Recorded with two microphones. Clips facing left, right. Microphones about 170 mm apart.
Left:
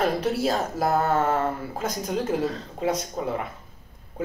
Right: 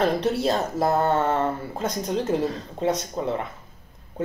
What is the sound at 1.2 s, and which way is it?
Speech, 5° left (ahead or behind).